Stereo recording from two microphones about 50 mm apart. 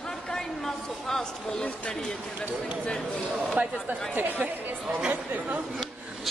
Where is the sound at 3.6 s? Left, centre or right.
Right.